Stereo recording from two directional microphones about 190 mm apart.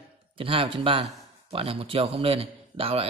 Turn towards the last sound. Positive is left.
turn(degrees=-30)  # may be behind; listen again after turning